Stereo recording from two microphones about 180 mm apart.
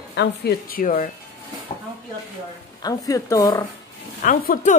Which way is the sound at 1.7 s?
35° left (ahead or behind).